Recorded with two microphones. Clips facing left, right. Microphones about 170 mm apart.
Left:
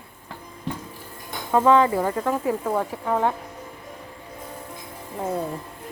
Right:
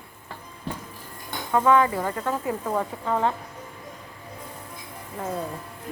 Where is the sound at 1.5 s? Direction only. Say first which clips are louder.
Left 3 dB; 20° left (ahead or behind).